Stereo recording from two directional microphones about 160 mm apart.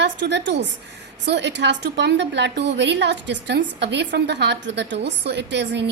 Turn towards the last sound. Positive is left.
turn(degrees=-90)